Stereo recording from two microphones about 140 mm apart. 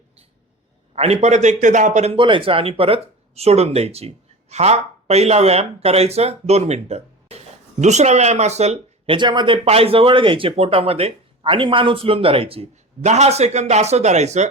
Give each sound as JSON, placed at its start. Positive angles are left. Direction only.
{"t": 0.9, "sound": "speech", "side_deg": -50}
{"t": 2.1, "sound": "speech", "side_deg": -35}
{"t": 9.6, "sound": "speech", "side_deg": -45}